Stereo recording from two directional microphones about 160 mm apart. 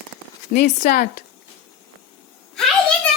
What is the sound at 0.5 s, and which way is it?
Speech, 70° left (ahead or behind).